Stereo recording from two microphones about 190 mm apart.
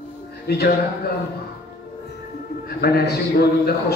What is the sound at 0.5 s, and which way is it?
Speech, 55° left (ahead or behind).